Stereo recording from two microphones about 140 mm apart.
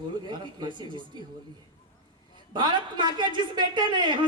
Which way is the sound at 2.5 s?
35° right (ahead or behind).